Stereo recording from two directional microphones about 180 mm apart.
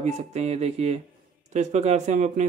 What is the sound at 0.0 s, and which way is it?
Speech, 40° right (ahead or behind).